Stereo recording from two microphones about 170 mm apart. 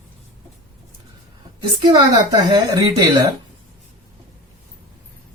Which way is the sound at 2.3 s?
25° right (ahead or behind).